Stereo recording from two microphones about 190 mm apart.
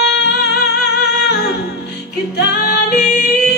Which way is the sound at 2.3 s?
60° left (ahead or behind).